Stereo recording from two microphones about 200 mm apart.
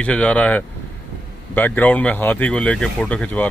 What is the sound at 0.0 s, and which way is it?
Speech, 5° left (ahead or behind).